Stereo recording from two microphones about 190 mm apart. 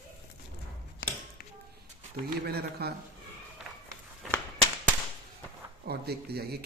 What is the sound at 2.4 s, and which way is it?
Speech, 55° right (ahead or behind).